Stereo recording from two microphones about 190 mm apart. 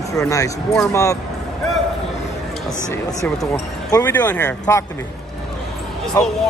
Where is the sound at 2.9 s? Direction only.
15° left (ahead or behind).